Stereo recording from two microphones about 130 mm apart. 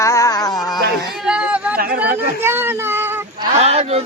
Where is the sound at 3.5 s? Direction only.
55° right (ahead or behind).